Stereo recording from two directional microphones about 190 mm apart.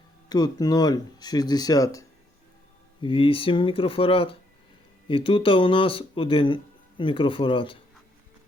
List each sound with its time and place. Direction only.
0.3 s speech: 20° left (ahead or behind)
3.0 s speech: 30° left (ahead or behind)